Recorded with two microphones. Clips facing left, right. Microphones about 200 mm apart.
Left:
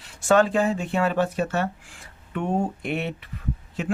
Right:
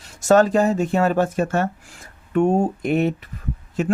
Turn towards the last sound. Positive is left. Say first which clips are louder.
# right 5 dB
turn(degrees=-45)  # may be behind; listen again after turning